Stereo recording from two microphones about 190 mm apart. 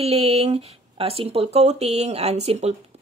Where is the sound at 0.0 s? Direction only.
35° right (ahead or behind).